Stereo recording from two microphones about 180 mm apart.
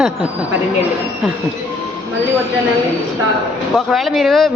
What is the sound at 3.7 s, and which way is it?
Speech, centre (ahead or behind).